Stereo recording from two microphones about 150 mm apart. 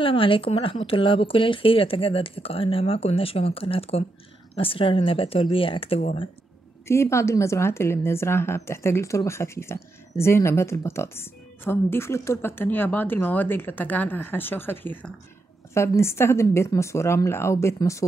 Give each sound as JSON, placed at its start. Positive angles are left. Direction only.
{"t": 0.0, "sound": "speech", "side_deg": 35}
{"t": 6.9, "sound": "speech", "side_deg": 20}